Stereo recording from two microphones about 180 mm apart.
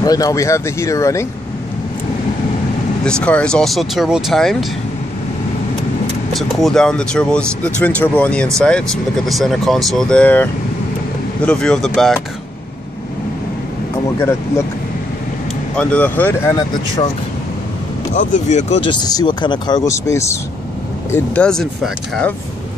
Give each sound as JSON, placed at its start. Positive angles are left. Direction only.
{"t": 0.0, "sound": "speech", "side_deg": 20}
{"t": 3.1, "sound": "speech", "side_deg": 5}
{"t": 6.3, "sound": "speech", "side_deg": 0}
{"t": 15.7, "sound": "speech", "side_deg": 5}
{"t": 18.1, "sound": "speech", "side_deg": 45}
{"t": 18.9, "sound": "speech", "side_deg": 25}
{"t": 21.1, "sound": "speech", "side_deg": 5}